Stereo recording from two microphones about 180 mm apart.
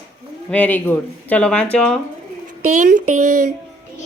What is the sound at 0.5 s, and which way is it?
Speech, 10° left (ahead or behind).